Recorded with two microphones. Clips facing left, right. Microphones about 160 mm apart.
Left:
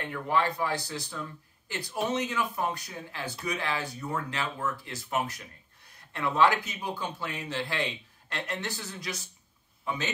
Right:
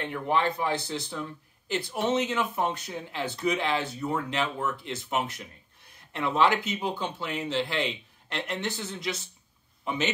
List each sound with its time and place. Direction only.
0.0 s speech: 20° right (ahead or behind)